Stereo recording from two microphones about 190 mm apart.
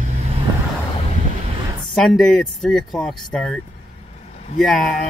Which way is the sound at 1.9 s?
Centre (ahead or behind).